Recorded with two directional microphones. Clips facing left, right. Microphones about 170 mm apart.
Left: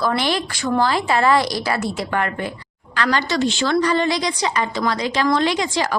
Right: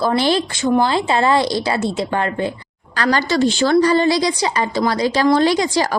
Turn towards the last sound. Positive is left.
turn(degrees=-35)  # may be behind; listen again after turning